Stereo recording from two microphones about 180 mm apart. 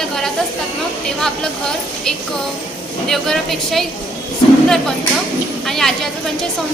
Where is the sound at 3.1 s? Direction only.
Centre (ahead or behind).